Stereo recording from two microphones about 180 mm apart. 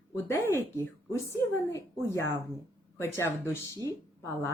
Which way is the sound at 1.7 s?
15° left (ahead or behind).